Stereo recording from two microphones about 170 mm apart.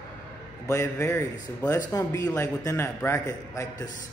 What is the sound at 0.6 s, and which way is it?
A man's voice, 15° left (ahead or behind).